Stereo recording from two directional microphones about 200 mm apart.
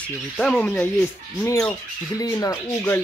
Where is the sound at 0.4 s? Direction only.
5° left (ahead or behind).